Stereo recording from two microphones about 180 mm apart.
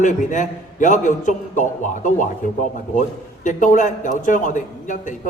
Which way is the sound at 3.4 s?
45° left (ahead or behind).